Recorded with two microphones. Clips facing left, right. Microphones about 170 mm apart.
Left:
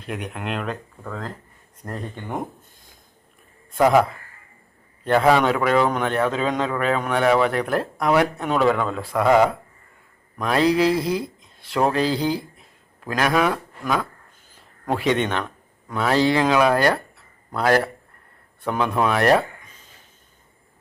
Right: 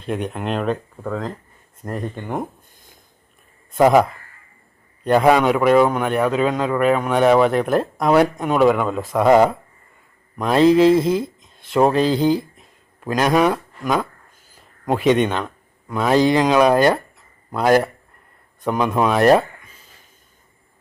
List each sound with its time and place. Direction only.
0.0 s speech: 30° right (ahead or behind)
1.8 s a man's voice: 15° right (ahead or behind)
3.8 s speech: 20° right (ahead or behind)
5.0 s a man's voice: 15° right (ahead or behind)
8.4 s a man's voice: 10° right (ahead or behind)
14.5 s a sound: 15° right (ahead or behind)
15.9 s speech: 15° right (ahead or behind)
19.6 s chop: 10° right (ahead or behind)